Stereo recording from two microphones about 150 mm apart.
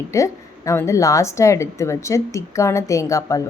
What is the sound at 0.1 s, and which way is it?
A woman's voice, 20° left (ahead or behind).